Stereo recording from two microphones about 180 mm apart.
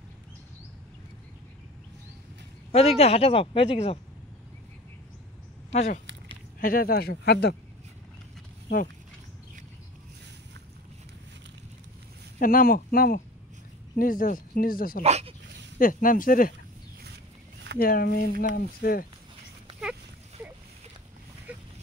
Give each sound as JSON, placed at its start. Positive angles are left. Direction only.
{"t": 2.7, "sound": "speech", "side_deg": 35}
{"t": 5.7, "sound": "speech", "side_deg": 40}
{"t": 6.6, "sound": "speech", "side_deg": 55}
{"t": 12.4, "sound": "speech", "side_deg": 50}
{"t": 15.0, "sound": "speech", "side_deg": -35}
{"t": 15.8, "sound": "speech", "side_deg": 50}
{"t": 17.7, "sound": "speech", "side_deg": 55}
{"t": 21.5, "sound": "a sound", "side_deg": -10}